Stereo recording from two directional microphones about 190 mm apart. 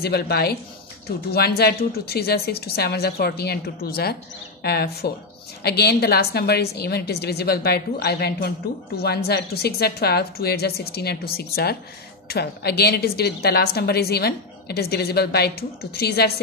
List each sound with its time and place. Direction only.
0.0 s a woman's voice: 55° left (ahead or behind)